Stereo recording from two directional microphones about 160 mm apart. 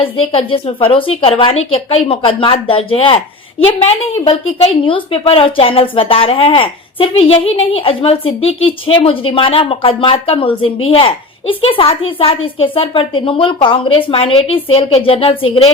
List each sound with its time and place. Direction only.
0.0 s a woman's voice: 35° left (ahead or behind)